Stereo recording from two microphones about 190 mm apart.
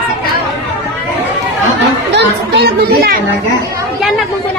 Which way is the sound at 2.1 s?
60° right (ahead or behind).